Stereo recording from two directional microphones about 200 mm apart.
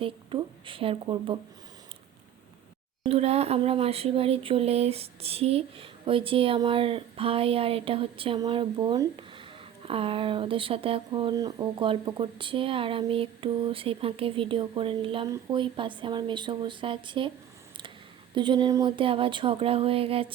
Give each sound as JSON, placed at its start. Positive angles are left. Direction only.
{"t": 0.0, "sound": "speech", "side_deg": -25}
{"t": 3.0, "sound": "speech", "side_deg": -30}
{"t": 18.3, "sound": "speech", "side_deg": -25}